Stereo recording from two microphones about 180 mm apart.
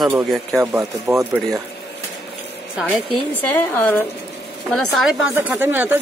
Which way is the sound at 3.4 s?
10° left (ahead or behind).